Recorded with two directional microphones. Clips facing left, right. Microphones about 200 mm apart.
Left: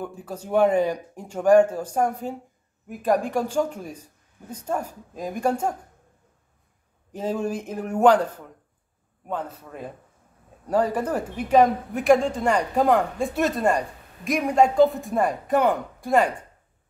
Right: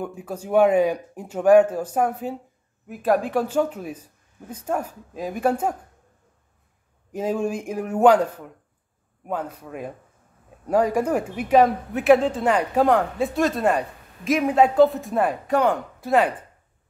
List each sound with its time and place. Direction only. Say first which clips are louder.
0.0 s speech: right 2 dB; 10° right (ahead or behind)
7.1 s speech: right 2 dB; 10° right (ahead or behind)